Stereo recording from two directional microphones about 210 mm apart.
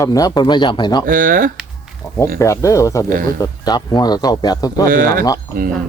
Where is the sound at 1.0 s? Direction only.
40° right (ahead or behind).